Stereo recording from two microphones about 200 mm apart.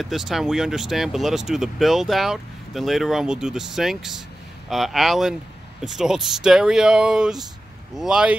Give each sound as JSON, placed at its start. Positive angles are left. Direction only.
{"t": 0.0, "sound": "speech", "side_deg": 0}